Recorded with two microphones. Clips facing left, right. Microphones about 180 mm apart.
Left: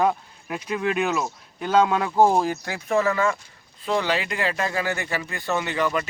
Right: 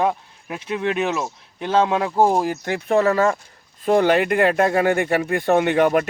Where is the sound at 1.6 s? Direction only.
25° right (ahead or behind).